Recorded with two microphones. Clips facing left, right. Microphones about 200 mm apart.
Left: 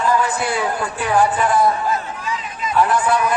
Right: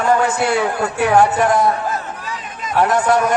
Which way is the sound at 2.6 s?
45° right (ahead or behind).